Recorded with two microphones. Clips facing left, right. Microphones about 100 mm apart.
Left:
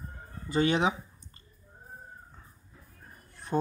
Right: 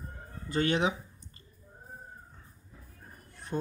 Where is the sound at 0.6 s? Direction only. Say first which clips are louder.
Left 2 dB; 25° left (ahead or behind).